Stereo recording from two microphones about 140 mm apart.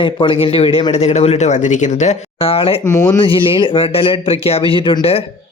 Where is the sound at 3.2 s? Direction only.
40° left (ahead or behind).